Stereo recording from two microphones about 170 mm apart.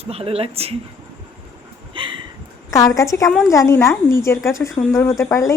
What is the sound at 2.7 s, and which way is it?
A woman's voice, 20° left (ahead or behind).